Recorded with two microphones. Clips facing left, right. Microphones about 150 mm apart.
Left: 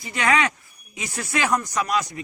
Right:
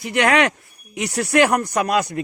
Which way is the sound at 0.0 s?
70° right (ahead or behind).